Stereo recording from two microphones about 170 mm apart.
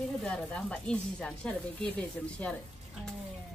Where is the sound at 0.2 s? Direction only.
5° left (ahead or behind).